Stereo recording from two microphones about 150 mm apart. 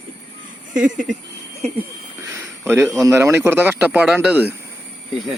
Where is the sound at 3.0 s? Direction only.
20° right (ahead or behind).